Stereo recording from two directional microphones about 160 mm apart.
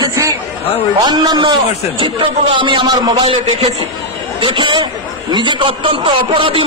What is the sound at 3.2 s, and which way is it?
A man's voice, 40° right (ahead or behind).